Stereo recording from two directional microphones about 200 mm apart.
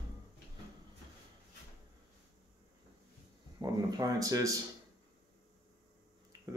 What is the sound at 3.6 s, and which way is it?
Speech, 15° right (ahead or behind).